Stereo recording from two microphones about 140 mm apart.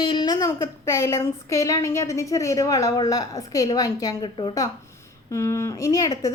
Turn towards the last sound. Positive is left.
turn(degrees=25)  # may be behind; listen again after turning